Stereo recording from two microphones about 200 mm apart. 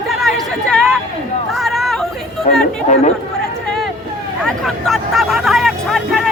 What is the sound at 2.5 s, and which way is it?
Speech, 35° left (ahead or behind).